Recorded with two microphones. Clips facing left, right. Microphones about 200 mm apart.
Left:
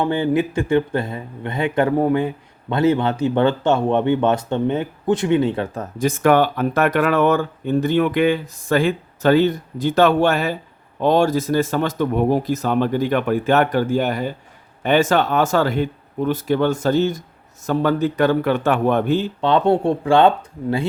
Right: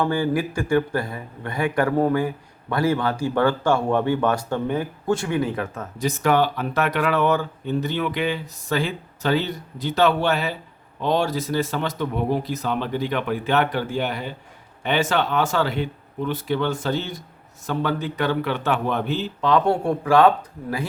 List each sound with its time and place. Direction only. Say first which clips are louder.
0.0 s a man's voice: left 3 dB; 20° left (ahead or behind)
6.0 s speech: left 4 dB; 55° left (ahead or behind)
19.4 s a man's voice: left 1 dB; 30° left (ahead or behind)